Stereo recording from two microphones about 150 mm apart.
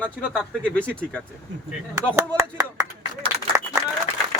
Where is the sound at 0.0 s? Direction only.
10° left (ahead or behind).